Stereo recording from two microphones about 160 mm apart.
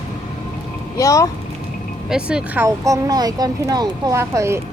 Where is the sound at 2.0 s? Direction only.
5° right (ahead or behind).